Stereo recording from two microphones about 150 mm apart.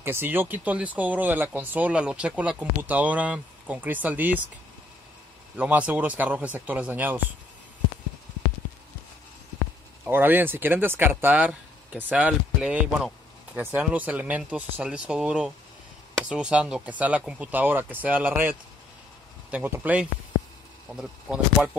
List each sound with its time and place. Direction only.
0.0 s speech: 15° right (ahead or behind)
5.6 s speech: 10° right (ahead or behind)
10.0 s speech: 15° right (ahead or behind)